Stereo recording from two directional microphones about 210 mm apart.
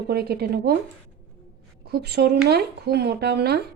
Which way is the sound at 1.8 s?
50° right (ahead or behind).